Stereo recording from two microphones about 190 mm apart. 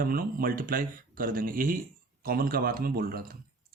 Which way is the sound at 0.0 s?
50° right (ahead or behind).